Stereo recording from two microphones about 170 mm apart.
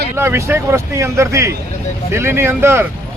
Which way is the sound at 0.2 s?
15° right (ahead or behind).